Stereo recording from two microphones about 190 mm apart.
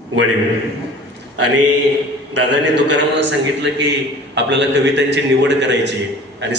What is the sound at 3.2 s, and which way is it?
A man's voice, 70° right (ahead or behind).